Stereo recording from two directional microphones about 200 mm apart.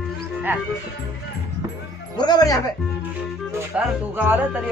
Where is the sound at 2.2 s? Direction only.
20° left (ahead or behind).